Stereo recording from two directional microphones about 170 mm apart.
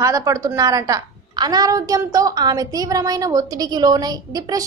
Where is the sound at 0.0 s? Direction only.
20° right (ahead or behind).